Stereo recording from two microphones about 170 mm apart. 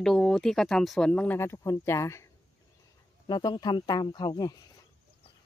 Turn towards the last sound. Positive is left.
turn(degrees=25)  # may be behind; listen again after turning